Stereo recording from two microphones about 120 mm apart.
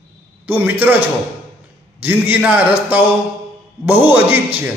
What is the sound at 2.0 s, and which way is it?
A man's voice, 15° right (ahead or behind).